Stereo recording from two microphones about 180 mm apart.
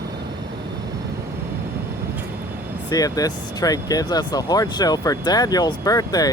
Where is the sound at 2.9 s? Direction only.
20° left (ahead or behind).